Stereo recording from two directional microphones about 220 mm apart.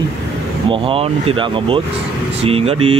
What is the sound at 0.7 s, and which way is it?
Speech, 25° right (ahead or behind).